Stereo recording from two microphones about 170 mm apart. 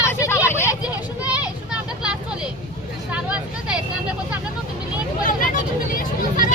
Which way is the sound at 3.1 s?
5° right (ahead or behind).